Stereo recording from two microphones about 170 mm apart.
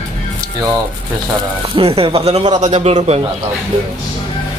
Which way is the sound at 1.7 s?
35° right (ahead or behind).